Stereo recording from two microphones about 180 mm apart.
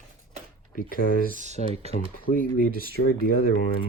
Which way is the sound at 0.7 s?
50° left (ahead or behind).